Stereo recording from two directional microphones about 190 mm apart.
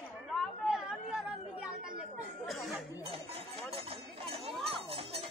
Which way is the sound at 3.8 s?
30° right (ahead or behind).